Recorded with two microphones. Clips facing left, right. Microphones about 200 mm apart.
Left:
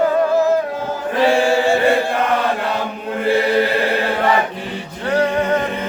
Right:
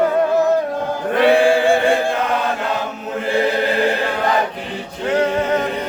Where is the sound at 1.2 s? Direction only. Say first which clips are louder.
Right 2 dB; 55° right (ahead or behind).